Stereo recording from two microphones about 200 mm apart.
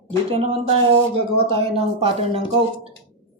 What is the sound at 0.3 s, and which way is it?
Speech, 30° right (ahead or behind).